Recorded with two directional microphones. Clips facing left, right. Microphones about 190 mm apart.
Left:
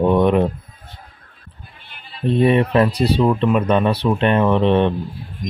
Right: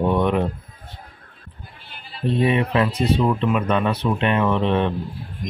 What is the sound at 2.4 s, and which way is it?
Speech, 35° left (ahead or behind).